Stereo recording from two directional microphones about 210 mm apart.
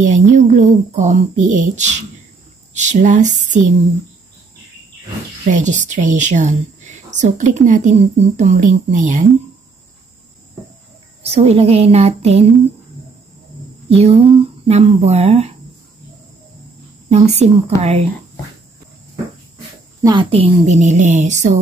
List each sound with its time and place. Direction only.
0.1 s a woman's voice: 35° right (ahead or behind)
5.5 s a woman's voice: 35° right (ahead or behind)
11.2 s a woman's voice: 30° right (ahead or behind)
13.8 s a woman's voice: 30° right (ahead or behind)
17.1 s a woman's voice: 30° right (ahead or behind)
20.0 s a woman's voice: 20° right (ahead or behind)